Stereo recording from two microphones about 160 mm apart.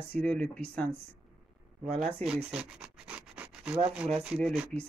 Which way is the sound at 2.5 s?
5° right (ahead or behind).